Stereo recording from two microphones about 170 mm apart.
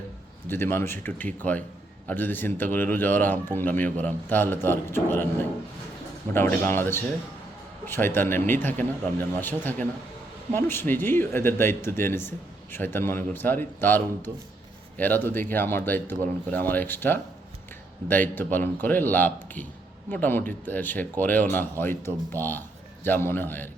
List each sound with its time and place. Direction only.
0.4 s speech: 15° left (ahead or behind)